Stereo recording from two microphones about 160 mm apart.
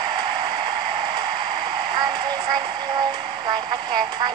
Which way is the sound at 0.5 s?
30° right (ahead or behind).